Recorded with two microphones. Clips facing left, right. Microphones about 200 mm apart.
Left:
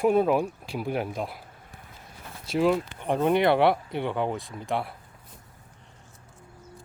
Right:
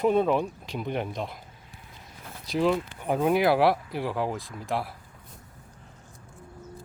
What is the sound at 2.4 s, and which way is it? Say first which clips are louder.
Speech: left 1 dB; centre (ahead or behind).